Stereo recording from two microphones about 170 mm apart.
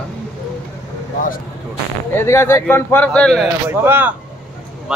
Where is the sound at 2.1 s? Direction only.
15° left (ahead or behind).